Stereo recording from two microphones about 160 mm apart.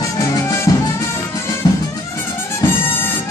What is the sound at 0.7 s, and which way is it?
Music, 25° left (ahead or behind).